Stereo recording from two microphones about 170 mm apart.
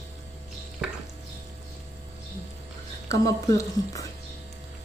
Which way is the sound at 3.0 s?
20° left (ahead or behind).